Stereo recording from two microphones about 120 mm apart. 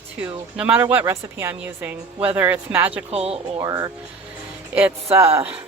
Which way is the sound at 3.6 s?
30° right (ahead or behind).